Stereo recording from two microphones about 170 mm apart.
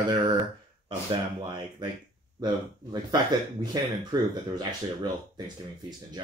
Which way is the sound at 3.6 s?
25° right (ahead or behind).